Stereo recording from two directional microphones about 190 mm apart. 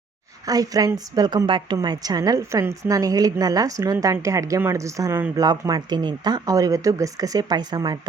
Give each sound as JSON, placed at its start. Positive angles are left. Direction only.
{"t": 0.4, "sound": "a woman's voice", "side_deg": -20}